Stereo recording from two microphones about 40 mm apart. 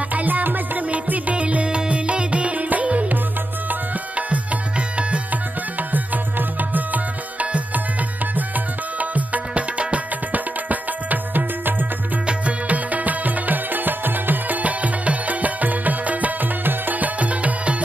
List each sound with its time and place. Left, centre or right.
0.1 s music: right
1.3 s music: right
4.3 s music: right
5.3 s music: right
9.1 s music: right
10.3 s music: right
12.3 s music: right